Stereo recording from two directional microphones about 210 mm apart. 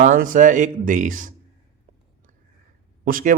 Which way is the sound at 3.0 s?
40° right (ahead or behind).